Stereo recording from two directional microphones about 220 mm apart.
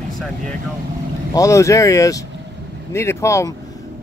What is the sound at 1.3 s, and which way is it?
Speech, 15° left (ahead or behind).